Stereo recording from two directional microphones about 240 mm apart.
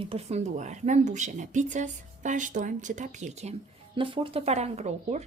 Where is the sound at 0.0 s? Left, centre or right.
Right.